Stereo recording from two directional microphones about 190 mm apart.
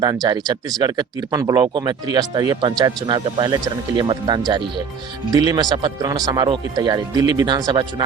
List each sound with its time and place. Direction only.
0.0 s speech: 20° right (ahead or behind)